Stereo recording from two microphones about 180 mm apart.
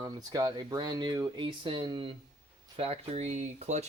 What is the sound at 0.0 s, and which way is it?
Speech, 20° right (ahead or behind).